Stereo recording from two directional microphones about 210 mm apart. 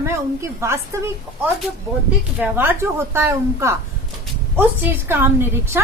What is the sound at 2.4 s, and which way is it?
A woman's voice, 10° right (ahead or behind).